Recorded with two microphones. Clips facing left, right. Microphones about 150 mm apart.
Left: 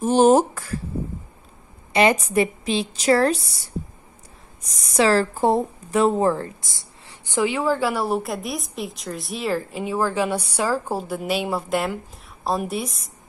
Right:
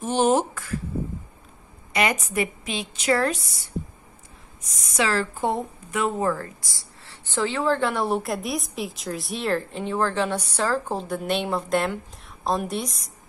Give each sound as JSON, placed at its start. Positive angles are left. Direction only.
{"t": 0.0, "sound": "a sound", "side_deg": 40}
{"t": 1.9, "sound": "a woman's voice", "side_deg": 30}
{"t": 4.8, "sound": "a woman's voice", "side_deg": 35}